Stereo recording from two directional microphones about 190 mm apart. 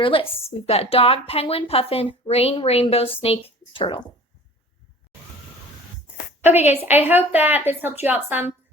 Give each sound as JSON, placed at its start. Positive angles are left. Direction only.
{"t": 0.0, "sound": "speech", "side_deg": 30}
{"t": 6.4, "sound": "a woman's voice", "side_deg": -10}